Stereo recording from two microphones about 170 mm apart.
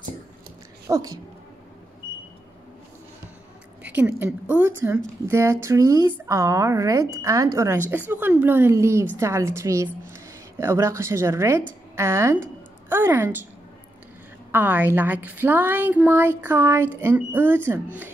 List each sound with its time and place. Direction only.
0.8 s speech: 20° right (ahead or behind)
3.8 s a woman's voice: 10° right (ahead or behind)
14.5 s a woman's voice: 10° right (ahead or behind)